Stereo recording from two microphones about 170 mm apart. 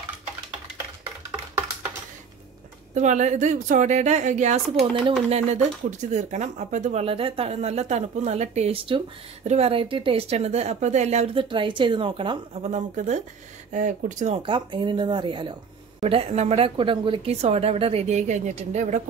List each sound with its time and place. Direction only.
2.9 s a woman's voice: 45° right (ahead or behind)
14.4 s a woman's voice: 30° right (ahead or behind); by 19.0 s 45° right (ahead or behind)